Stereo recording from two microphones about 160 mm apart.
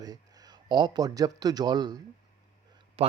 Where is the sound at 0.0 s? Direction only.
25° right (ahead or behind).